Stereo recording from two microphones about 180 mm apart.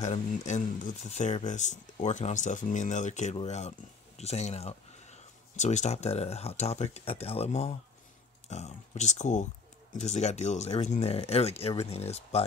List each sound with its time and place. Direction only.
0.0 s speech: 40° left (ahead or behind)